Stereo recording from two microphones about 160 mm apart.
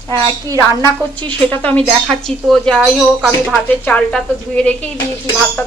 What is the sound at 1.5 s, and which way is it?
Speech, 10° left (ahead or behind).